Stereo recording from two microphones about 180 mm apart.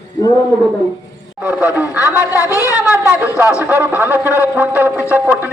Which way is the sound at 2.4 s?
20° left (ahead or behind).